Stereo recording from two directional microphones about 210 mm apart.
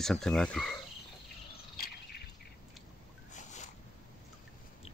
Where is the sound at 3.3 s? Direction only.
35° left (ahead or behind).